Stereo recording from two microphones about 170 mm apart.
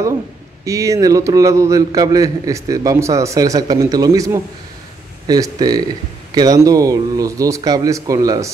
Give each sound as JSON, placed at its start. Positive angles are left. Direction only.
{"t": 0.7, "sound": "a man's voice", "side_deg": -20}